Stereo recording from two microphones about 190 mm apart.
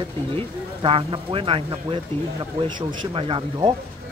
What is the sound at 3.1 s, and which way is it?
Speech, 25° right (ahead or behind).